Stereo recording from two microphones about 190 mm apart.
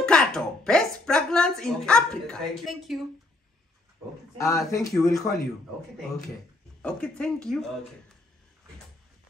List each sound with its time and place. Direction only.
0.0 s speech: 5° left (ahead or behind)
4.4 s speech: 15° left (ahead or behind)
6.8 s speech: 5° left (ahead or behind)